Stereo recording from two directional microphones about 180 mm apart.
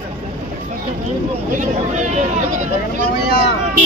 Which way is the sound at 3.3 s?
65° left (ahead or behind).